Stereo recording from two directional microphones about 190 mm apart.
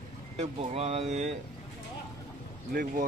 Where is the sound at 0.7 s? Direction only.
35° right (ahead or behind).